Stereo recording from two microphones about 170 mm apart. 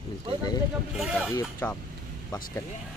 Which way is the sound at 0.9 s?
5° right (ahead or behind).